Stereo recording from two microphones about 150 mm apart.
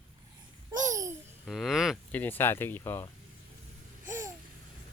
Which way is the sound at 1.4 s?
Centre (ahead or behind).